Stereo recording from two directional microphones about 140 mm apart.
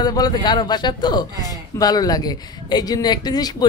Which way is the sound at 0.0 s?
30° left (ahead or behind).